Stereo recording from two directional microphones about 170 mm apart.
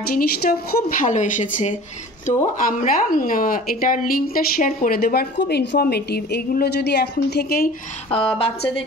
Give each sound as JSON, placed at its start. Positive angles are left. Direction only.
{"t": 0.1, "sound": "a woman's voice", "side_deg": 60}
{"t": 2.8, "sound": "speech", "side_deg": 50}
{"t": 8.1, "sound": "a woman's voice", "side_deg": 30}